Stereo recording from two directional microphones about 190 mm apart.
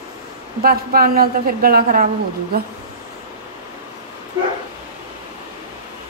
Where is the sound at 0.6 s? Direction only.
50° right (ahead or behind).